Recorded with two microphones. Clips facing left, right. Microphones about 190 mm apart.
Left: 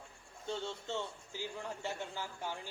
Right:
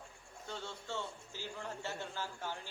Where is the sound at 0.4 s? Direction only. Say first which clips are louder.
Left 5 dB; 25° left (ahead or behind).